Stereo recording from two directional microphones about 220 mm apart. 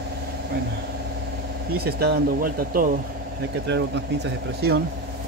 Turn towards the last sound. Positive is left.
turn(degrees=-50)  # may be behind; listen again after turning